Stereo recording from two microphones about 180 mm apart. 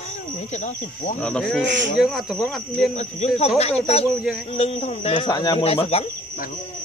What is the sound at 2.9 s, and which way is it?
Speech, 35° left (ahead or behind).